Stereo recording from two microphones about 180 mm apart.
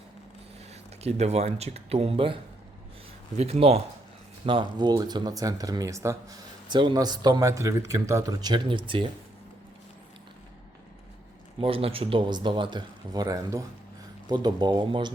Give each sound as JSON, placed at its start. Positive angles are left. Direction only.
{"t": 0.7, "sound": "speech", "side_deg": -35}
{"t": 11.6, "sound": "speech", "side_deg": -30}